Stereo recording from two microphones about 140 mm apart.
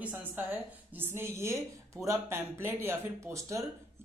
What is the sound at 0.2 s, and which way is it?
Speech, 15° right (ahead or behind).